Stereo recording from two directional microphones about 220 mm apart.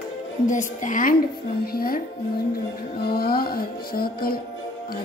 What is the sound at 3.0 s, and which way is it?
Music, 45° left (ahead or behind).